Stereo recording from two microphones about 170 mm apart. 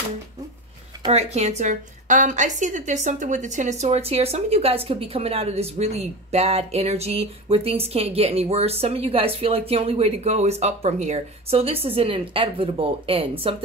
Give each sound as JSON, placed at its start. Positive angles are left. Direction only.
{"t": 1.1, "sound": "a woman's voice", "side_deg": -40}